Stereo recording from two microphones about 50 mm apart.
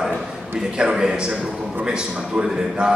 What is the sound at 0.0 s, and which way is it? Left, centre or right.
A man's voice, centre.